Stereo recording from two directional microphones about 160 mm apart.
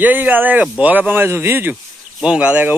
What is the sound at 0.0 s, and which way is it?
Speech, 10° right (ahead or behind).